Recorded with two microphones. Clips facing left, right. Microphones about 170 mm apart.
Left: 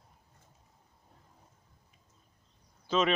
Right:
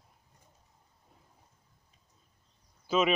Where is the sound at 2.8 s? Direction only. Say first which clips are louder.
Right 1 dB; 10° right (ahead or behind).